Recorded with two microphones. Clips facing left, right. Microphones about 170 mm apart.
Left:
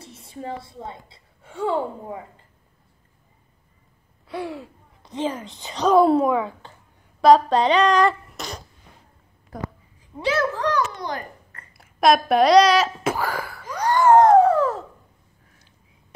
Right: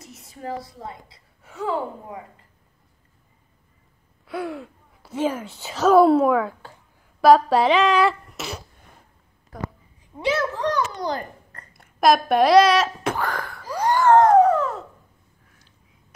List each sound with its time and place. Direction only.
0.0 s a woman's voice: 30° left (ahead or behind)
4.3 s speech: centre (ahead or behind)
10.2 s a child's voice: 25° right (ahead or behind)
11.7 s speech: centre (ahead or behind)
14.2 s a sound: 30° left (ahead or behind)